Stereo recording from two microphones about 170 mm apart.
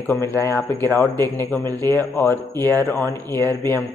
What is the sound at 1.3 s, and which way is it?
Speech, 20° right (ahead or behind).